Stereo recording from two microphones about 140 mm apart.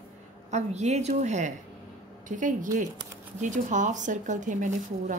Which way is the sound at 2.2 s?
70° right (ahead or behind).